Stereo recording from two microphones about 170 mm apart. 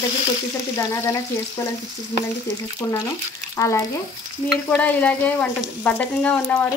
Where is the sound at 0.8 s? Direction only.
15° left (ahead or behind).